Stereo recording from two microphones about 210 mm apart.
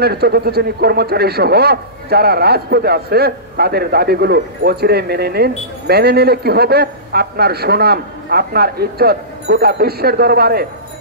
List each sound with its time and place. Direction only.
0.0 s a man's voice: 50° right (ahead or behind)